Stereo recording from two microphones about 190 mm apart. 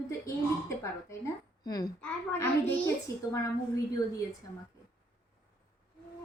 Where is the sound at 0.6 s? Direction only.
15° left (ahead or behind).